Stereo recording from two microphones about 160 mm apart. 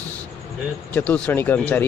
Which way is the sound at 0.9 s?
10° left (ahead or behind).